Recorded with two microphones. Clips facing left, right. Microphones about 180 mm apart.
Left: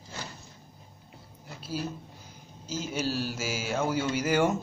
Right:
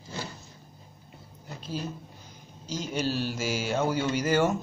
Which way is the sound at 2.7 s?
5° left (ahead or behind).